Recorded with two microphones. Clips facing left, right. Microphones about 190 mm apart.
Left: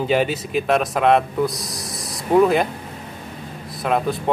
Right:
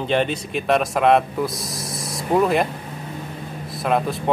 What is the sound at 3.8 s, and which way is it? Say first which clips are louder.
Speech: even; centre (ahead or behind).